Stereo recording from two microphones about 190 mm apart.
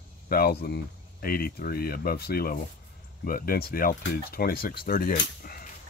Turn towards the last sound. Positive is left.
turn(degrees=45)  # may be behind; listen again after turning